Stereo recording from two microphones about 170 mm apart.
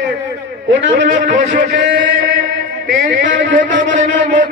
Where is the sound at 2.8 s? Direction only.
50° right (ahead or behind).